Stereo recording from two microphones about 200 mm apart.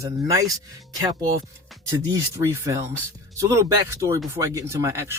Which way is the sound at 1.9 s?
15° right (ahead or behind).